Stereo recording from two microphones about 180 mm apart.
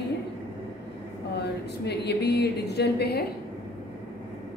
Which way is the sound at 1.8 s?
65° left (ahead or behind).